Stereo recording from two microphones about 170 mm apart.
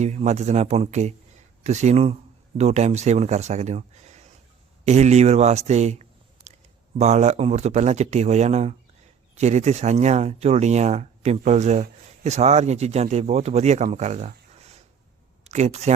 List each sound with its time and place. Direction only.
0.0 s speech: 40° right (ahead or behind)